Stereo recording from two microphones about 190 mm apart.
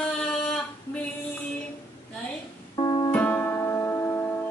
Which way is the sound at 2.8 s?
20° left (ahead or behind).